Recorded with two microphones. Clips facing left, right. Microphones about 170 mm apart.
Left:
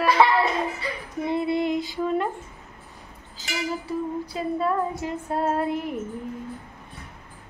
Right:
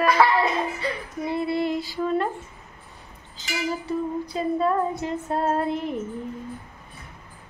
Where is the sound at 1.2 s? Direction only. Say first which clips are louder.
Left 1 dB; 20° left (ahead or behind).